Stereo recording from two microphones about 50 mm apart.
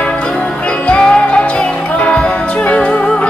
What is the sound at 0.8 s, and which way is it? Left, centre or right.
Music, left.